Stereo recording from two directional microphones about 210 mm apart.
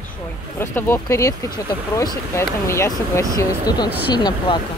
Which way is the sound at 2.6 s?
10° left (ahead or behind).